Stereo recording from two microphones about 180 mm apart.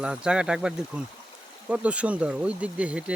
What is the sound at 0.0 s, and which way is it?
Speech, 5° right (ahead or behind).